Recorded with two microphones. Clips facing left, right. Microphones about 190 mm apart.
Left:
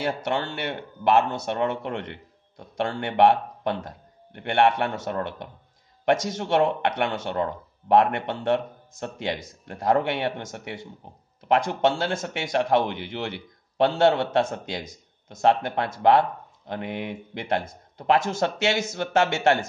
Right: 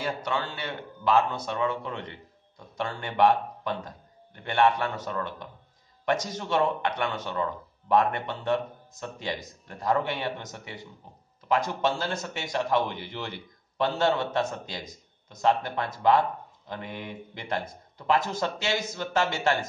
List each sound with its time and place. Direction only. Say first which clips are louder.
0.0 s speech: left 4 dB; 65° left (ahead or behind)
12.1 s a man's voice: left 5 dB; 50° left (ahead or behind)
12.6 s speech: left 4 dB; 65° left (ahead or behind)